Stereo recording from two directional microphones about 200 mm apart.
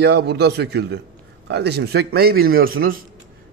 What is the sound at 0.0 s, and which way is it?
A man's voice, 55° right (ahead or behind).